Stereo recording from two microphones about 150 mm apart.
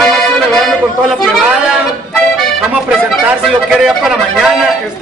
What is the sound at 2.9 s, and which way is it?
Speech, 5° right (ahead or behind).